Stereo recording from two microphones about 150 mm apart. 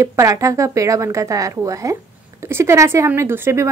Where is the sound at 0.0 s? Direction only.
20° right (ahead or behind).